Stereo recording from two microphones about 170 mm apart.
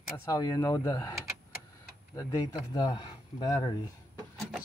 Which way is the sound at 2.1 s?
20° left (ahead or behind).